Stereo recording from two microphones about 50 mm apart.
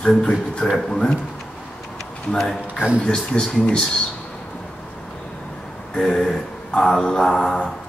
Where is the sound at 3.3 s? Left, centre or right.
Centre.